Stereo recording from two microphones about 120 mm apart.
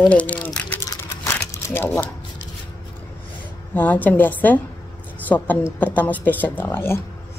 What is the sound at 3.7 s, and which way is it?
A woman's voice, 15° left (ahead or behind).